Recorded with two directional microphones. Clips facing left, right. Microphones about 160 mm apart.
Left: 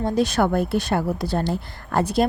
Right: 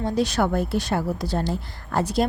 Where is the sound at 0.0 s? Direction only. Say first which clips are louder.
Left 2 dB; 50° left (ahead or behind).